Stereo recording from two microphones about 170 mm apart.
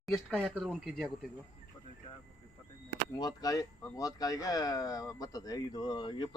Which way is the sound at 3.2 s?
25° left (ahead or behind).